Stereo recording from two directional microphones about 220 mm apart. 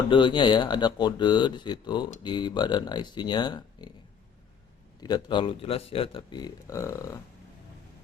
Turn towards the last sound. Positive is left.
turn(degrees=15)  # may be behind; listen again after turning